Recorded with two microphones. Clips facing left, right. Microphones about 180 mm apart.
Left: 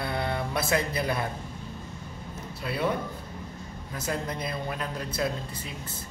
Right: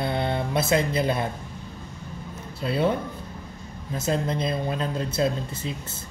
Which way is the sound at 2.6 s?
25° right (ahead or behind).